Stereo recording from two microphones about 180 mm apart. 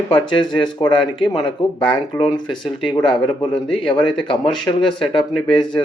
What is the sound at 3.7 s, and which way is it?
Speech, 25° left (ahead or behind).